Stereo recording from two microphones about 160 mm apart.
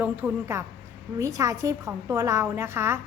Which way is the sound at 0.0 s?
15° right (ahead or behind).